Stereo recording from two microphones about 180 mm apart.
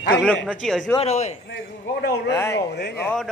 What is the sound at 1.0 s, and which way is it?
Speech, 40° left (ahead or behind).